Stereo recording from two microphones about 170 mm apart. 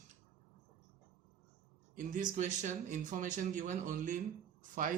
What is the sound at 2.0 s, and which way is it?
Speech, 50° right (ahead or behind).